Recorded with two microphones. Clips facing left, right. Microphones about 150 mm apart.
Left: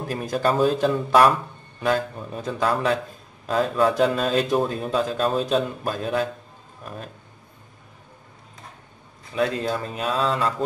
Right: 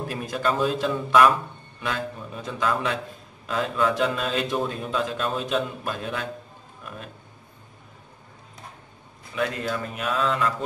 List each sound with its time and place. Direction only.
0.1 s a man's voice: 40° left (ahead or behind)
9.3 s a man's voice: 30° left (ahead or behind)